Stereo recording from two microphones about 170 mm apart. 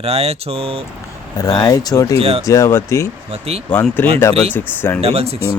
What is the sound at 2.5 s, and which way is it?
Speech, 15° left (ahead or behind).